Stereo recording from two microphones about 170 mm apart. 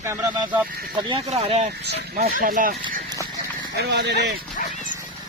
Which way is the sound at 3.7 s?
80° right.